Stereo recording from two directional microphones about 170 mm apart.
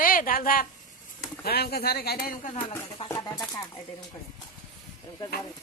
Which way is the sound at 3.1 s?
20° left (ahead or behind).